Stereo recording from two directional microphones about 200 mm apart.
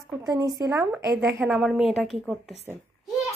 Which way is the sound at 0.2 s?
15° right (ahead or behind).